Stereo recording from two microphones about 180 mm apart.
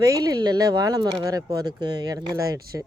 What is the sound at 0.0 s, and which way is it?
Speech, 20° right (ahead or behind).